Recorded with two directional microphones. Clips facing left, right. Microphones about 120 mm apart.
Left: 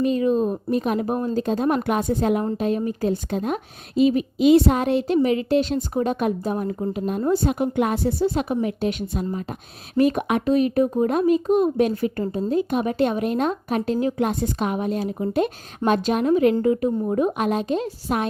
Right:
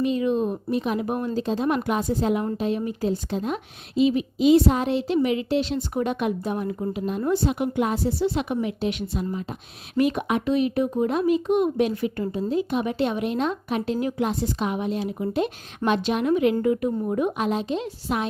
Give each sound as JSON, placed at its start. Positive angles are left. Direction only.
{"t": 0.0, "sound": "a woman's voice", "side_deg": 40}
{"t": 5.9, "sound": "a woman's voice", "side_deg": 35}
{"t": 8.2, "sound": "a woman's voice", "side_deg": 45}
{"t": 17.3, "sound": "a woman's voice", "side_deg": 50}